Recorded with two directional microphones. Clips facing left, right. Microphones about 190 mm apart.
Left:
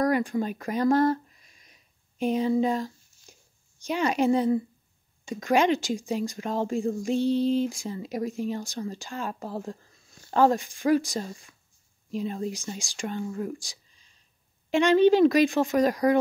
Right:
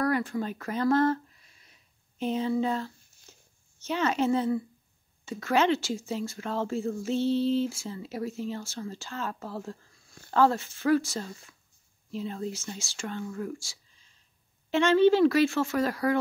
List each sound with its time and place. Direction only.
0.0 s a sound: 15° left (ahead or behind)
3.8 s speech: 15° left (ahead or behind)
13.2 s speech: 30° left (ahead or behind)
14.7 s speech: 15° left (ahead or behind)